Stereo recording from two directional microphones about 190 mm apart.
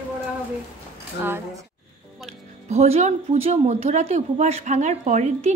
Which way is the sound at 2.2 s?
35° right (ahead or behind).